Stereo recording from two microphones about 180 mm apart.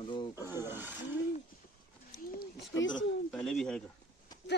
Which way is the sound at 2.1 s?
85° left.